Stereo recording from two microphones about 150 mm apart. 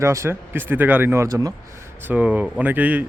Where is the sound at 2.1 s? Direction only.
10° right (ahead or behind).